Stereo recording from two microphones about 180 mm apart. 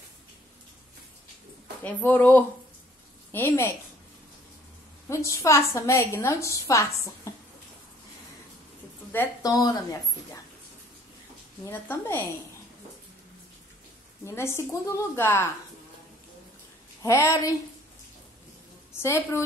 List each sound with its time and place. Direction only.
1.8 s a woman's voice: 10° left (ahead or behind)
5.1 s a woman's voice: 15° left (ahead or behind)
9.1 s a woman's voice: 15° left (ahead or behind)
11.6 s a woman's voice: 10° left (ahead or behind)
14.2 s a woman's voice: 15° left (ahead or behind)
17.0 s a woman's voice: 15° left (ahead or behind)
18.9 s a woman's voice: 15° left (ahead or behind)